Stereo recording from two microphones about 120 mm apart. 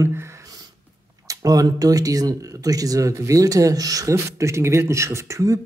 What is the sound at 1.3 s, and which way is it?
Speech, 30° right (ahead or behind).